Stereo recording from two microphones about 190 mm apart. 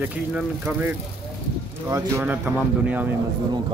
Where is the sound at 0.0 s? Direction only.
5° right (ahead or behind).